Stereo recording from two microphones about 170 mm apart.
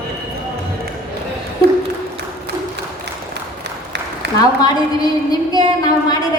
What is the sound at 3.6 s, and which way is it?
Applause, 80° right.